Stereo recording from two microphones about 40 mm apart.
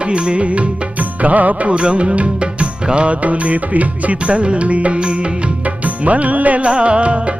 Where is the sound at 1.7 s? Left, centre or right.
Right.